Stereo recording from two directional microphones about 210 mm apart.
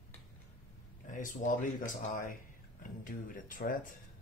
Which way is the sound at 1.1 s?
40° left (ahead or behind).